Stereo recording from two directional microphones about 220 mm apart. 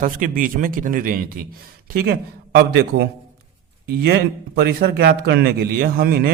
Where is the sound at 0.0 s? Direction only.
40° right (ahead or behind).